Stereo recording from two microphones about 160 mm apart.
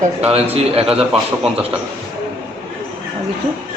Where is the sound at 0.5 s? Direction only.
40° right (ahead or behind).